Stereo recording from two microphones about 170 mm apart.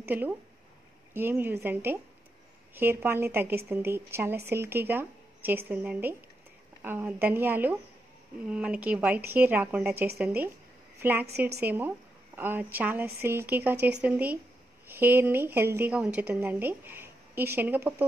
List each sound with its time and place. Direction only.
0.0 s a woman's voice: 10° right (ahead or behind)
11.2 s a woman's voice: 70° right (ahead or behind)
11.6 s a woman's voice: 10° right (ahead or behind)